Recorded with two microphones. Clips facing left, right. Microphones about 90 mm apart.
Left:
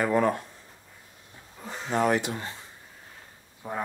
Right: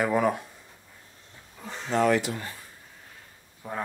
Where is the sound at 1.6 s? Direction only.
10° left (ahead or behind).